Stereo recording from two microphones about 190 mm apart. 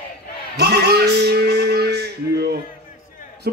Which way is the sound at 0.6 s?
60° right (ahead or behind).